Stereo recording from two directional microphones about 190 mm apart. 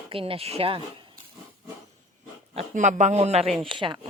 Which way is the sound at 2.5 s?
40° right (ahead or behind).